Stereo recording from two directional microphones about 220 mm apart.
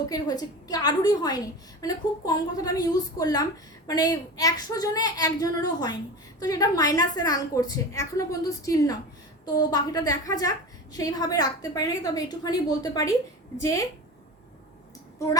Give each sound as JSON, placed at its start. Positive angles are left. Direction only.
{"t": 0.1, "sound": "a woman's voice", "side_deg": 15}